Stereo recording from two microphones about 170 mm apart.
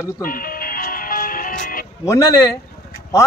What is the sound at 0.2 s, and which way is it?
Music, 55° left (ahead or behind).